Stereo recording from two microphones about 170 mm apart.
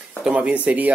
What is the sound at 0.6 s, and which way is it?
Speech, 10° right (ahead or behind).